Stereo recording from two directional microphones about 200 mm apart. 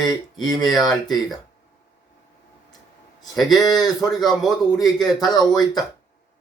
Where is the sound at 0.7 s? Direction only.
Centre (ahead or behind).